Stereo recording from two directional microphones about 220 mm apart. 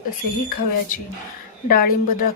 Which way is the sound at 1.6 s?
40° left (ahead or behind).